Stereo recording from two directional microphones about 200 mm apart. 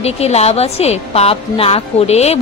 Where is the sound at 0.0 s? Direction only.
30° left (ahead or behind).